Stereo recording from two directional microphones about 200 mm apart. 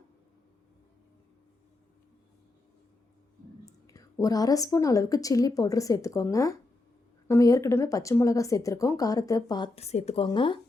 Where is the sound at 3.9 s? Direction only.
15° left (ahead or behind).